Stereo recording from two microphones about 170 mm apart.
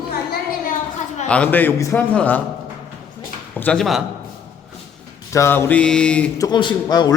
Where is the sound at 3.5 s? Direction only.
5° left (ahead or behind).